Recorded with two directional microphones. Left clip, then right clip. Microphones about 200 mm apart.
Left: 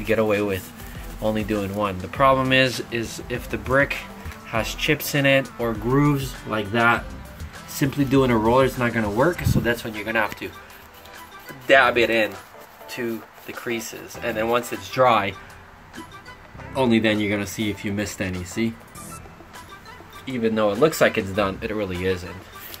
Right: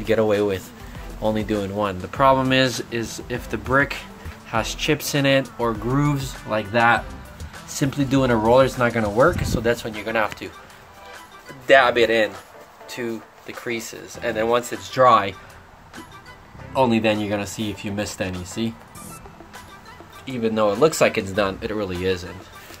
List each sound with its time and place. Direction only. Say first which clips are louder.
0.0 s speech: right 2 dB; 5° right (ahead or behind)
16.7 s speech: right 1 dB; centre (ahead or behind)
20.2 s speech: right 1 dB; centre (ahead or behind)